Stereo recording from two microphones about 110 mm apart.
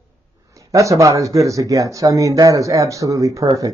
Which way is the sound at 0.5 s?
30° right (ahead or behind).